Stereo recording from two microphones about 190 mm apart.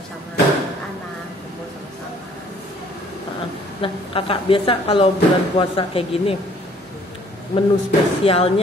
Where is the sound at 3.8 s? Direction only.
30° left (ahead or behind).